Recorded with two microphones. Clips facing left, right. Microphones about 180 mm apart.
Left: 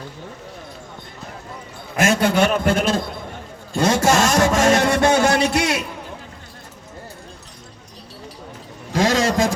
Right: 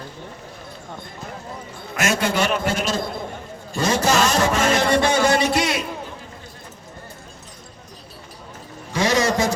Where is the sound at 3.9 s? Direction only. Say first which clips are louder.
Left 1 dB; 50° left (ahead or behind).